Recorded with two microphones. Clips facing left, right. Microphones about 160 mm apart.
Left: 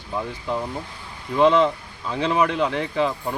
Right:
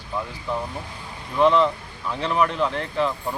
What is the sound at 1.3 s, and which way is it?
Speech, 20° left (ahead or behind).